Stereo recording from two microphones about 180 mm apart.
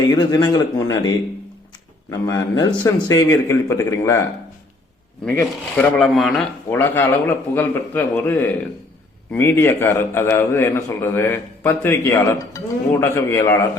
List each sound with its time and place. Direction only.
0.2 s a man's voice: 25° left (ahead or behind)
5.7 s a man's voice: 5° left (ahead or behind)